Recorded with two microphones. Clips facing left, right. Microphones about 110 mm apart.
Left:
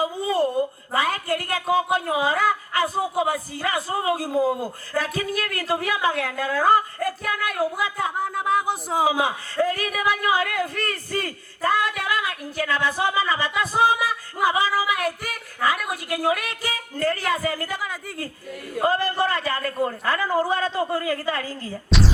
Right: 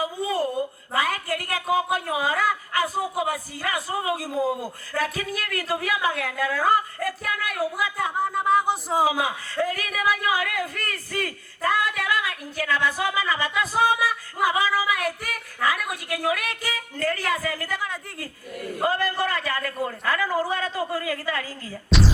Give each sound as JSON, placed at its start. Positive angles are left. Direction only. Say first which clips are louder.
{"t": 0.0, "sound": "speech", "louder": "left 3 dB", "side_deg": 30}
{"t": 8.1, "sound": "a sound", "louder": "right 5 dB", "side_deg": 0}
{"t": 9.0, "sound": "speech", "louder": "left 2 dB", "side_deg": 30}
{"t": 18.9, "sound": "a man's voice", "louder": "left 3 dB", "side_deg": 30}
{"t": 21.8, "sound": "speech", "louder": "even", "side_deg": 0}